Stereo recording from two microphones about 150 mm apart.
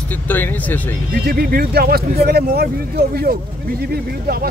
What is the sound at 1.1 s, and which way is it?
Speech, 90° right.